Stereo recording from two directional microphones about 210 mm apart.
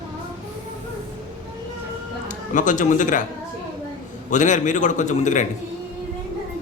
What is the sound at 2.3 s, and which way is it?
Speech, 35° left (ahead or behind).